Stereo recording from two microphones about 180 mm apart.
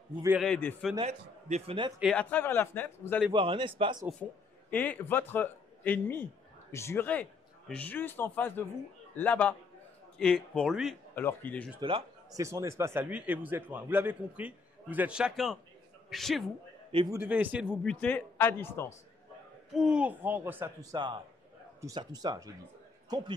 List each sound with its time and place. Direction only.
0.4 s a man's voice: 5° left (ahead or behind)
0.9 s a man's voice: 35° right (ahead or behind)
2.0 s a man's voice: 5° left (ahead or behind)
3.3 s a man's voice: 30° right (ahead or behind)
4.2 s a man's voice: 10° left (ahead or behind)
11.1 s a man's voice: 10° left (ahead or behind)
11.8 s a man's voice: 25° right (ahead or behind); by 16.4 s centre (ahead or behind)
16.9 s a man's voice: 25° right (ahead or behind)
17.2 s speech: 10° right (ahead or behind)
17.8 s a man's voice: 5° left (ahead or behind)
19.7 s a man's voice: 5° right (ahead or behind); by 23.3 s 25° right (ahead or behind)